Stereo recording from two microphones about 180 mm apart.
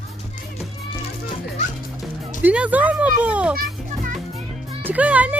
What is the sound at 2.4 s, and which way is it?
Speech, 5° right (ahead or behind).